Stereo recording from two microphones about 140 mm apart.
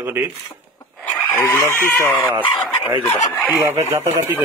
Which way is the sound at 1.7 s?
15° left (ahead or behind).